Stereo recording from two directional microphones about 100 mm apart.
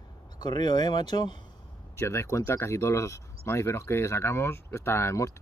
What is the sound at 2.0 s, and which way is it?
Speech, 30° left (ahead or behind).